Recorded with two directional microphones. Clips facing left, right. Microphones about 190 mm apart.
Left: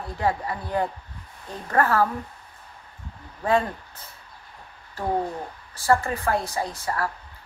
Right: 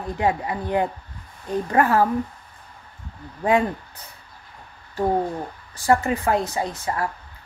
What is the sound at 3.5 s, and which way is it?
Speech, 15° right (ahead or behind).